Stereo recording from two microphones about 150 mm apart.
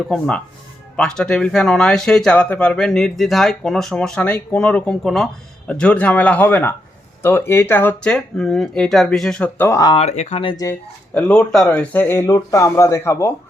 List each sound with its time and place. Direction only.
0.1 s speech: 5° left (ahead or behind)
9.9 s speech: 45° left (ahead or behind)
10.5 s speech: 25° left (ahead or behind)
11.1 s speech: 10° left (ahead or behind)